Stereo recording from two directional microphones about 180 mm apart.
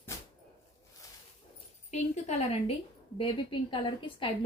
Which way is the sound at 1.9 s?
40° left (ahead or behind).